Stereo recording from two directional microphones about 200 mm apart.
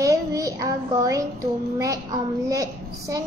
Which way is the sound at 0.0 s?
15° right (ahead or behind).